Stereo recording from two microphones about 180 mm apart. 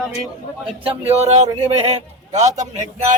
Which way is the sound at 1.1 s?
35° right (ahead or behind).